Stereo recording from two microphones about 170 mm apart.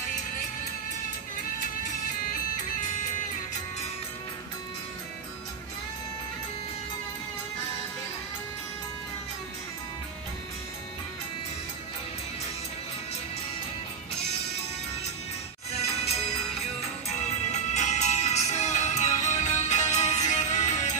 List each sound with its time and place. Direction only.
17.5 s music: 45° left (ahead or behind)